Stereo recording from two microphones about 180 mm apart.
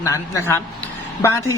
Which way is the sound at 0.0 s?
15° left (ahead or behind).